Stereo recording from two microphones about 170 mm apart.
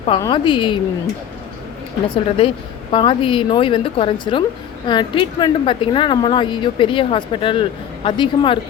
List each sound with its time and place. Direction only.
0.2 s speech: 25° left (ahead or behind)
2.0 s speech: 30° left (ahead or behind)